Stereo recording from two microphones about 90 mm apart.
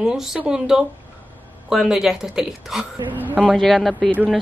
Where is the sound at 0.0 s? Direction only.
5° right (ahead or behind).